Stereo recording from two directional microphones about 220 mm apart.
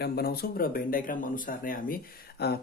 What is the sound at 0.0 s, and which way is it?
Speech, 45° left (ahead or behind).